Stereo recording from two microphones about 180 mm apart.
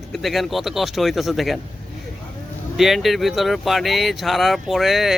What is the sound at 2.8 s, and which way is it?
Speech, centre (ahead or behind).